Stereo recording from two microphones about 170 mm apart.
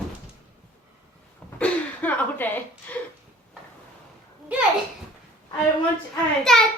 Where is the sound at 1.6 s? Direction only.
10° left (ahead or behind).